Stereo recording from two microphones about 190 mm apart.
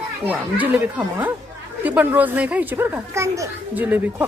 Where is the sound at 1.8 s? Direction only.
10° right (ahead or behind).